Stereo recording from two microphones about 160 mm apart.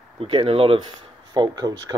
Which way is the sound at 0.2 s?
35° right (ahead or behind).